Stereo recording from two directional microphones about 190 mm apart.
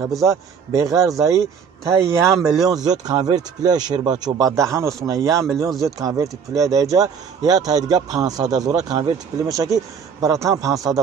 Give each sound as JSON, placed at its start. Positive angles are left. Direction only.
{"t": 0.0, "sound": "a man's voice", "side_deg": -15}
{"t": 5.7, "sound": "speech", "side_deg": 0}
{"t": 5.9, "sound": "a man's voice", "side_deg": -20}